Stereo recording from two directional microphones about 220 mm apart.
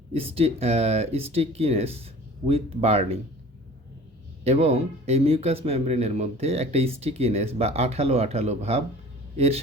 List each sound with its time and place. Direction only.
0.1 s speech: 25° right (ahead or behind)
4.4 s speech: 30° right (ahead or behind)